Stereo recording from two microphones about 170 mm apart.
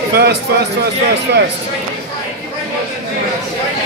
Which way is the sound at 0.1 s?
70° right (ahead or behind).